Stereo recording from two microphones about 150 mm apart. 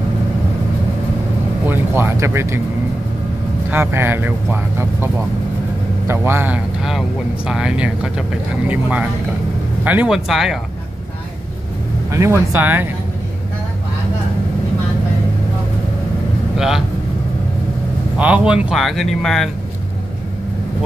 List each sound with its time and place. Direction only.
1.7 s speech: 15° right (ahead or behind)
3.7 s speech: 15° right (ahead or behind)
12.1 s speech: 20° right (ahead or behind)
16.5 s speech: 5° right (ahead or behind)
18.1 s speech: 5° right (ahead or behind)